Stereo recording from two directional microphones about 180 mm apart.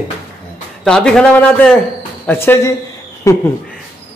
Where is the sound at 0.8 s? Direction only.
5° left (ahead or behind).